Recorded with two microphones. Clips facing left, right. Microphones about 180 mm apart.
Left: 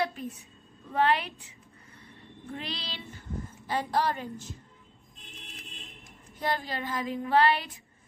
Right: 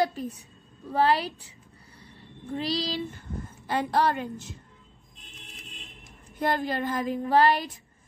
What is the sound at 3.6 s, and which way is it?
Speech, 65° right (ahead or behind).